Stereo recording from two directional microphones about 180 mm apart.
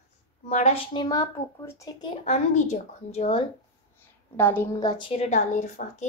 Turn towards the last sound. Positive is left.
turn(degrees=40)  # may be behind; listen again after turning